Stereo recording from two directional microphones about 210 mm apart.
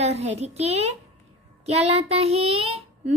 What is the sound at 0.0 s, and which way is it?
Speech, 30° right (ahead or behind).